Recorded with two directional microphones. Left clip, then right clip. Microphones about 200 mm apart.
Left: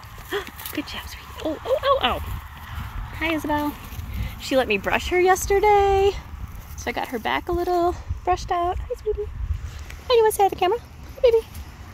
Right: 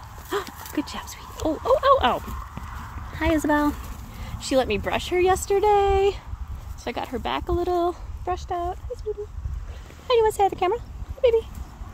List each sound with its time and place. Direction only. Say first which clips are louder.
0.3 s dog: even; 25° right (ahead or behind)
1.1 s speech: right 3 dB; 35° right (ahead or behind)
3.4 s speech: right 3 dB; 30° right (ahead or behind)
4.4 s speech: left 1 dB; 5° right (ahead or behind); by 8.7 s 15° left (ahead or behind)
10.0 s speech: left 2 dB; 10° left (ahead or behind)